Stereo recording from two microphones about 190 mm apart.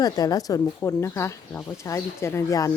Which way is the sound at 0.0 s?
20° left (ahead or behind).